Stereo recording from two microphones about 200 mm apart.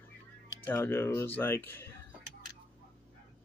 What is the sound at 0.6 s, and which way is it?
Speech, 10° left (ahead or behind).